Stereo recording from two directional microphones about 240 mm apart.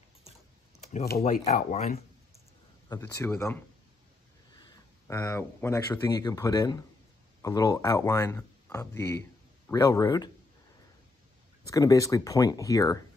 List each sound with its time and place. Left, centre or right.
0.9 s speech: left
2.9 s speech: centre
11.6 s speech: centre